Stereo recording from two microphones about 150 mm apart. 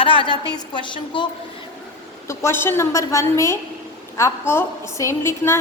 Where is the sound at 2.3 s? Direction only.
15° left (ahead or behind).